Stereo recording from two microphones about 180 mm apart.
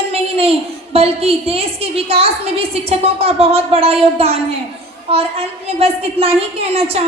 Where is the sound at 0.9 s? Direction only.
35° right (ahead or behind).